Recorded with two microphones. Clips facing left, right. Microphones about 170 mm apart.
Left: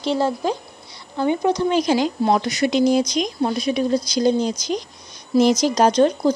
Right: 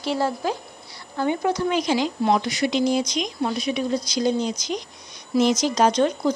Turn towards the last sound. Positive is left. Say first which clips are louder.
# left 4 dB
turn(degrees=35)  # may be behind; listen again after turning